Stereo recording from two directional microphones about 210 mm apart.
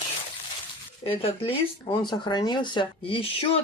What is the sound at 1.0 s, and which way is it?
Speech, 25° left (ahead or behind).